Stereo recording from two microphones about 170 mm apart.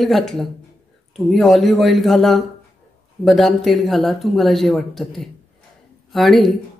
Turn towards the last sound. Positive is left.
turn(degrees=0)  # may be behind; listen again after turning